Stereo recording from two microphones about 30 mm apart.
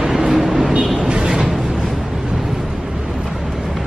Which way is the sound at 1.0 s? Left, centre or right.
Right.